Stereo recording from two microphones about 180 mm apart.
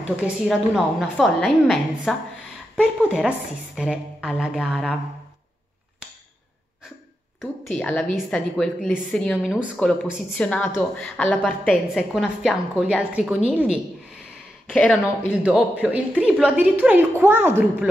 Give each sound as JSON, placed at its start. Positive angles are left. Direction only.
{"t": 0.2, "sound": "a woman's voice", "side_deg": 0}
{"t": 7.7, "sound": "a woman's voice", "side_deg": 10}
{"t": 14.7, "sound": "speech", "side_deg": 5}
{"t": 16.2, "sound": "a woman's voice", "side_deg": -5}